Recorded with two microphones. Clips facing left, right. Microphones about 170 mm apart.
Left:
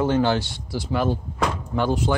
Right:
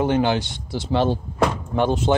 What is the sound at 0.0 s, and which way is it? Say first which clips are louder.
Speech: right 1 dB; 20° right (ahead or behind).